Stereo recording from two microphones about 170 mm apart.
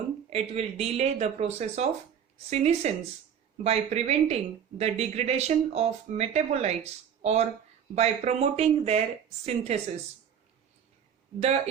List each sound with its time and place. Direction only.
0.3 s speech: 35° right (ahead or behind)
11.3 s speech: 40° right (ahead or behind)